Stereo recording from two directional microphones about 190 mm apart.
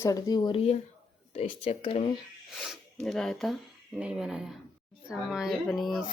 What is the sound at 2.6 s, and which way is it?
A child's voice, centre (ahead or behind).